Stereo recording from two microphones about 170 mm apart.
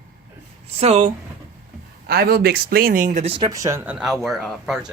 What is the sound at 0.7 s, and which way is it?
Speech, 40° right (ahead or behind).